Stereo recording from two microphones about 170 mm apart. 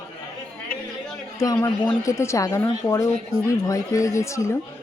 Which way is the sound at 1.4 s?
20° left (ahead or behind).